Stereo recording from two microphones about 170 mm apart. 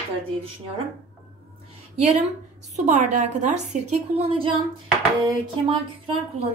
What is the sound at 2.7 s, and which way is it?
A woman's voice, 45° right (ahead or behind).